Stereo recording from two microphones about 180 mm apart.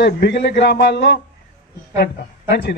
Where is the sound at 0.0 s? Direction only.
65° left (ahead or behind).